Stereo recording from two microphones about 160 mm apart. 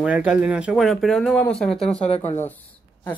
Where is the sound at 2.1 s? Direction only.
40° left (ahead or behind).